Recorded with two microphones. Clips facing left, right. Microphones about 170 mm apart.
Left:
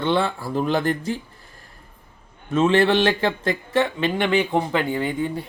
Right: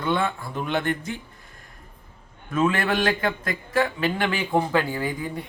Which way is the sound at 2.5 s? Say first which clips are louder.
Left 5 dB; 25° left (ahead or behind).